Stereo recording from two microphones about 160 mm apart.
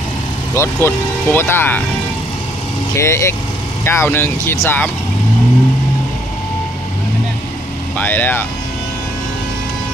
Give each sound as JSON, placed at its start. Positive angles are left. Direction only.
{"t": 0.6, "sound": "speech", "side_deg": 15}
{"t": 3.0, "sound": "speech", "side_deg": 15}
{"t": 8.0, "sound": "speech", "side_deg": 10}